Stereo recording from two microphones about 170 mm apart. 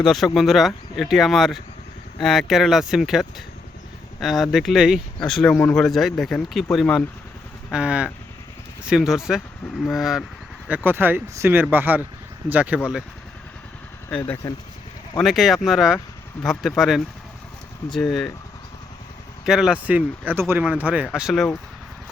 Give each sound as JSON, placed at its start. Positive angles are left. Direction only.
{"t": 0.0, "sound": "speech", "side_deg": 0}
{"t": 14.4, "sound": "speech", "side_deg": 15}
{"t": 15.2, "sound": "speech", "side_deg": 0}
{"t": 19.5, "sound": "speech", "side_deg": -5}